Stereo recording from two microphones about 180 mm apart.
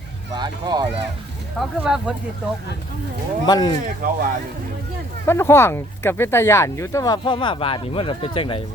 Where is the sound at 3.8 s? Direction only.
50° right (ahead or behind).